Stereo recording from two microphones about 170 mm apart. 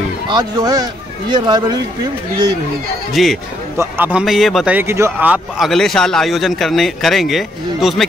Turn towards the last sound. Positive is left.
turn(degrees=0)  # may be behind; listen again after turning